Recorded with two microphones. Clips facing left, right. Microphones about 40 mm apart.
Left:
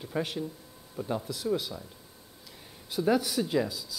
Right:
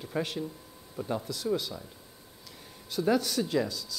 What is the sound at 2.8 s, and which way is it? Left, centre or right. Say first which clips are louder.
Speech: left 1 dB; centre.